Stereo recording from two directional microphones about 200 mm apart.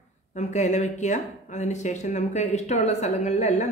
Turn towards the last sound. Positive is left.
turn(degrees=35)  # may be behind; listen again after turning